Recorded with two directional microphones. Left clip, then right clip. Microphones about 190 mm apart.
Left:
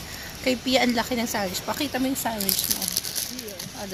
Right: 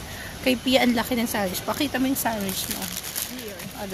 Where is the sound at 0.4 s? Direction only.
Centre (ahead or behind).